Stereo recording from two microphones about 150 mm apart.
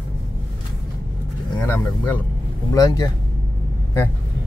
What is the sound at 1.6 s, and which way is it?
Speech, 15° left (ahead or behind).